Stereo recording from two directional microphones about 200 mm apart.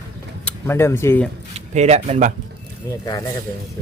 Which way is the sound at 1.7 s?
35° right (ahead or behind).